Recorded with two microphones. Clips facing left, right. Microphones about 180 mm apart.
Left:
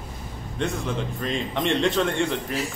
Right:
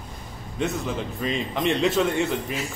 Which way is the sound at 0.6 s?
Centre (ahead or behind).